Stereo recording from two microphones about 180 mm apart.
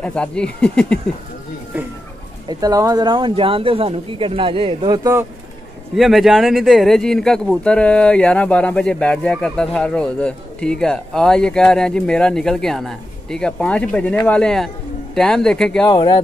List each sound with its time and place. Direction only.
0.0 s speech: 5° left (ahead or behind)
2.4 s speech: 20° right (ahead or behind)
5.9 s speech: centre (ahead or behind)
15.9 s speech: 25° left (ahead or behind)